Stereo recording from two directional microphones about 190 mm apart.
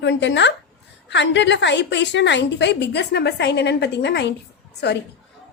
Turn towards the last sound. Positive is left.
turn(degrees=60)  # may be behind; listen again after turning